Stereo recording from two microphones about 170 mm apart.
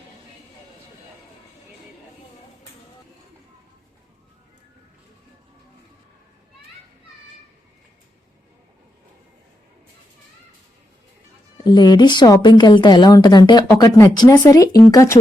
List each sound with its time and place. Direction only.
11.5 s speech: 25° left (ahead or behind)